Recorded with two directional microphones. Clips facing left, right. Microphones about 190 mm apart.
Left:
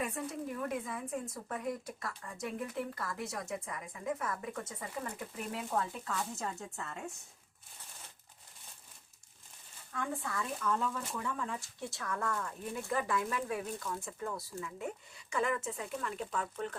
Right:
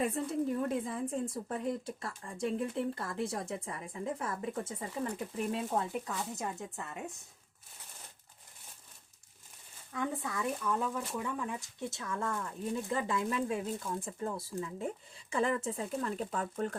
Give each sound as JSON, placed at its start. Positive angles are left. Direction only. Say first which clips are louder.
{"t": 0.0, "sound": "speech", "louder": "right 6 dB", "side_deg": -30}
{"t": 9.9, "sound": "speech", "louder": "right 2 dB", "side_deg": -20}